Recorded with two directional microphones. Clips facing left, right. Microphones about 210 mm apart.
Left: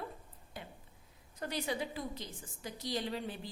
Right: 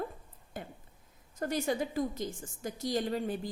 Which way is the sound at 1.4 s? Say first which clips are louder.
Right 6 dB; 45° right (ahead or behind).